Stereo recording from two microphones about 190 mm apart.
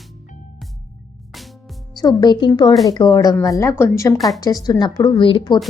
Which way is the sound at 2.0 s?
20° left (ahead or behind).